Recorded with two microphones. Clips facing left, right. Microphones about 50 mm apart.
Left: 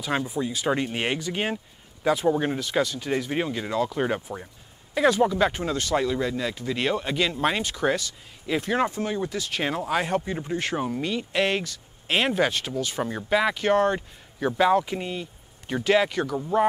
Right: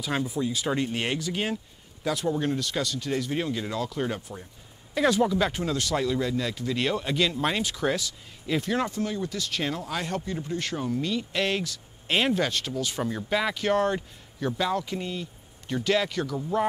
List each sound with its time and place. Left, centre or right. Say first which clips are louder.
0.0 s speech: left 1 dB; centre
4.9 s speech: left 2 dB; centre
14.4 s speech: left 6 dB; left